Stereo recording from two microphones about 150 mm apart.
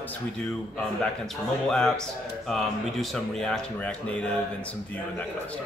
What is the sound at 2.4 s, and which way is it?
Speech, centre (ahead or behind).